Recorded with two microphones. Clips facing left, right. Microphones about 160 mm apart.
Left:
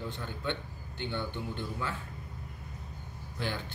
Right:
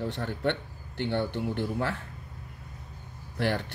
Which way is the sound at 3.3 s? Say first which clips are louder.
Right 8 dB; 70° right (ahead or behind).